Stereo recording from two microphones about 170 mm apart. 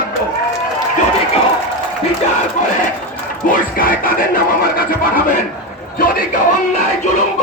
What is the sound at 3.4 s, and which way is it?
Speech, 55° left (ahead or behind).